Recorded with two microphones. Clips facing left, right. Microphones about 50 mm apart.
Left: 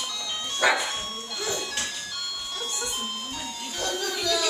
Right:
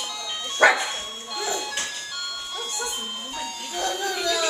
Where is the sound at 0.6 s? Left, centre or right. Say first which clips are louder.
Right 5 dB; right.